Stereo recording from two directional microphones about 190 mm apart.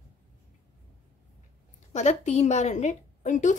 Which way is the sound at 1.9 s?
35° left (ahead or behind).